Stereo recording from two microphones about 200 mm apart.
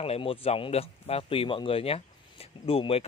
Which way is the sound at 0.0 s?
30° left (ahead or behind).